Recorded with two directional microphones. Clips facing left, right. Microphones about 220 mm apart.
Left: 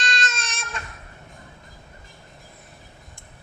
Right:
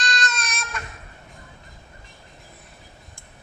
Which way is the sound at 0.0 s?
25° left (ahead or behind).